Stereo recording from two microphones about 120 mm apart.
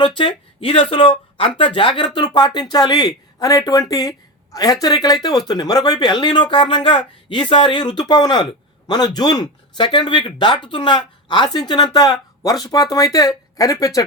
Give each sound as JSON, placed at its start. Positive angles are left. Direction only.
{"t": 0.0, "sound": "speech", "side_deg": 45}